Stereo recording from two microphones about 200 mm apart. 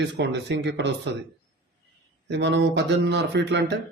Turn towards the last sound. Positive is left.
turn(degrees=-55)  # may be behind; listen again after turning